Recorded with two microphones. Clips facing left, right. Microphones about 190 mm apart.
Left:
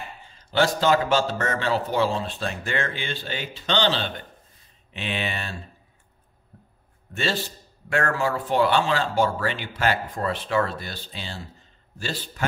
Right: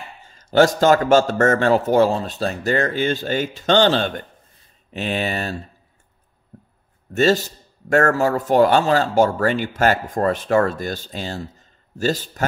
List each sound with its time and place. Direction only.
0.3 s a man's voice: 45° right (ahead or behind)
7.2 s a man's voice: 45° right (ahead or behind)